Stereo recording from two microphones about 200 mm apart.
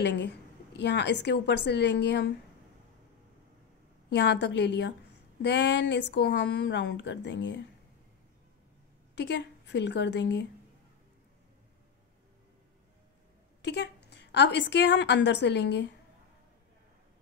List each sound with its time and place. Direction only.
0.0 s a woman's voice: 60° left (ahead or behind)
4.1 s a woman's voice: 60° left (ahead or behind)
9.1 s a woman's voice: 60° left (ahead or behind)
13.6 s a woman's voice: 60° left (ahead or behind)